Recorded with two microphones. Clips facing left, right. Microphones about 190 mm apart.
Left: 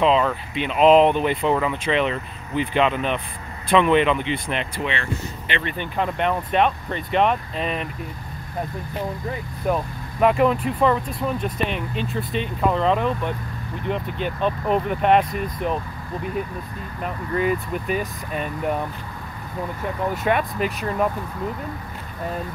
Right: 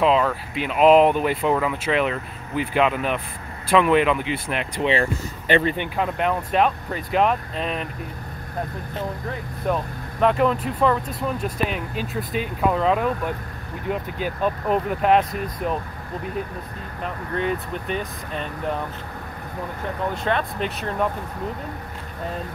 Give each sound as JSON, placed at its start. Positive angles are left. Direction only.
{"t": 0.0, "sound": "speech", "side_deg": -5}
{"t": 5.5, "sound": "speech", "side_deg": -35}
{"t": 5.9, "sound": "speech", "side_deg": 0}
{"t": 9.6, "sound": "speech", "side_deg": 5}
{"t": 17.0, "sound": "speech", "side_deg": 5}
{"t": 20.2, "sound": "speech", "side_deg": 10}